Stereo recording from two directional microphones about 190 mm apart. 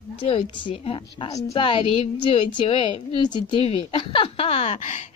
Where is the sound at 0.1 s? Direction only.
30° left (ahead or behind).